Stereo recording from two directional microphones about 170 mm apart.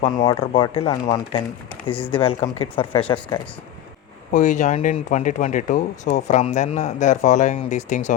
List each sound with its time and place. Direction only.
0.2 s speech: 30° left (ahead or behind)
4.3 s speech: 50° left (ahead or behind)